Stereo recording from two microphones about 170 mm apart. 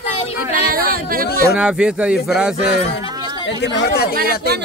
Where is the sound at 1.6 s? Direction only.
5° right (ahead or behind).